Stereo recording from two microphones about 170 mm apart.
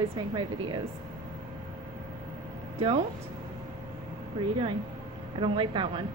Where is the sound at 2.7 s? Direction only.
35° right (ahead or behind).